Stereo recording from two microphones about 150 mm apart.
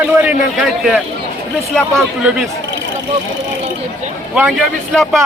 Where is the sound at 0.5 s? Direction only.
Centre (ahead or behind).